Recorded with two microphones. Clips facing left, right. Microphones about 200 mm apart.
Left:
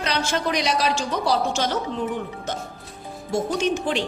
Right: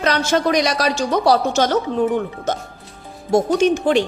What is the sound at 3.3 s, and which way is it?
Speech, 40° right (ahead or behind).